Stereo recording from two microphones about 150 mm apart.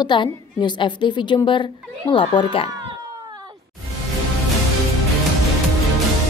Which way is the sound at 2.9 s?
30° right (ahead or behind).